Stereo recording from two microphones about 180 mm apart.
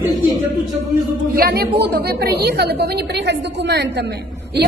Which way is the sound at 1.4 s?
55° right (ahead or behind).